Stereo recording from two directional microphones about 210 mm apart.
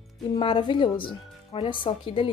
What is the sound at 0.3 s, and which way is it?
Speech, 25° left (ahead or behind).